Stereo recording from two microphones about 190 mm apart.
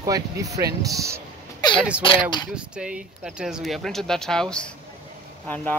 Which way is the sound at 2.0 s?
25° left (ahead or behind).